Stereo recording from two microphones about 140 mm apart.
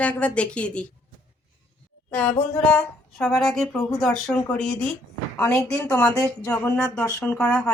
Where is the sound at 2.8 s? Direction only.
Centre (ahead or behind).